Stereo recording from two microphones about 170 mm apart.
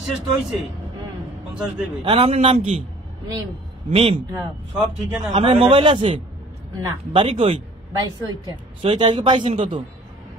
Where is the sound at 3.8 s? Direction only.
35° right (ahead or behind).